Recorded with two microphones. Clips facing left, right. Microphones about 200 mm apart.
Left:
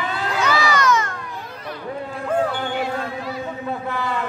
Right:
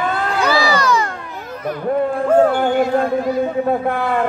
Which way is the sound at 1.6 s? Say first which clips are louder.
Right 12 dB; 50° right (ahead or behind).